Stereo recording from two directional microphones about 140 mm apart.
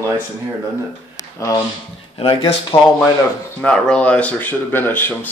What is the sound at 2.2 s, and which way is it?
Speech, 40° left (ahead or behind).